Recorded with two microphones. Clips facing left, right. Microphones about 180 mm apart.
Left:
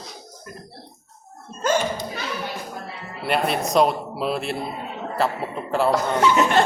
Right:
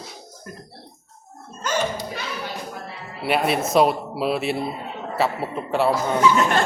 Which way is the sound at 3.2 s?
5° right (ahead or behind).